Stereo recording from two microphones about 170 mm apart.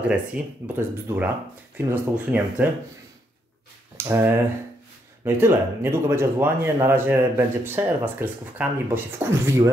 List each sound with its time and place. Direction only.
0.4 s speech: 10° right (ahead or behind)
3.9 s speech: 10° right (ahead or behind)